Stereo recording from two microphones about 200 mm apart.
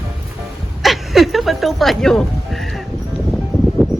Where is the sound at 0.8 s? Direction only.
Centre (ahead or behind).